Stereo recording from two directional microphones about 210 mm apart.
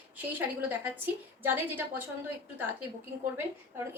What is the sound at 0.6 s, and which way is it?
A woman's voice, 10° right (ahead or behind).